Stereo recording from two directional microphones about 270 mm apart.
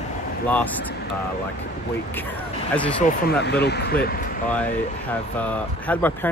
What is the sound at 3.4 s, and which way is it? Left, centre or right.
Speech, left.